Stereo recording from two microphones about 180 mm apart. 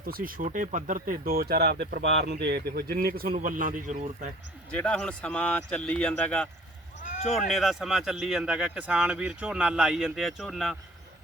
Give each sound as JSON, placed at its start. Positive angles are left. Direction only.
{"t": 0.0, "sound": "speech", "side_deg": -55}
{"t": 4.7, "sound": "speech", "side_deg": 5}
{"t": 7.0, "sound": "a sound", "side_deg": 45}
{"t": 7.3, "sound": "speech", "side_deg": 0}